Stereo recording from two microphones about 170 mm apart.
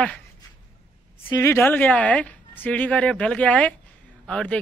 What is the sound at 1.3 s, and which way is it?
Speech, 15° left (ahead or behind).